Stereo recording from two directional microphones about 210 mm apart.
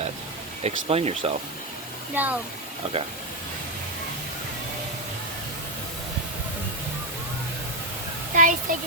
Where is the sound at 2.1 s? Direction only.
10° right (ahead or behind).